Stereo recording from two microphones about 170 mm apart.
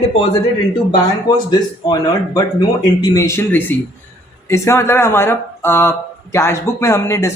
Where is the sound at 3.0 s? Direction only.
20° left (ahead or behind).